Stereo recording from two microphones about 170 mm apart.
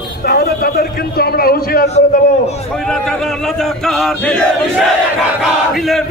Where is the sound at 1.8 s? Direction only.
40° left (ahead or behind).